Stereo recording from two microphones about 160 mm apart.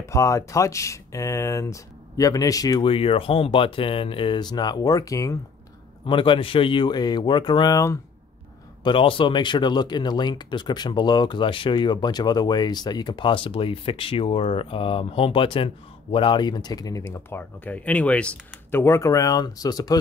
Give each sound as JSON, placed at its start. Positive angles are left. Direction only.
{"t": 0.0, "sound": "speech", "side_deg": 20}
{"t": 2.9, "sound": "speech", "side_deg": 35}
{"t": 6.0, "sound": "speech", "side_deg": 30}
{"t": 8.8, "sound": "speech", "side_deg": 35}